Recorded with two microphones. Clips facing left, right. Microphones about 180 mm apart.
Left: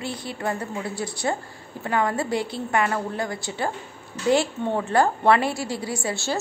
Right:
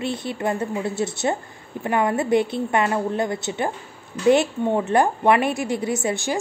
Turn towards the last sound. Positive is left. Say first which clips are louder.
# right 4 dB
turn(degrees=-20)  # may be behind; listen again after turning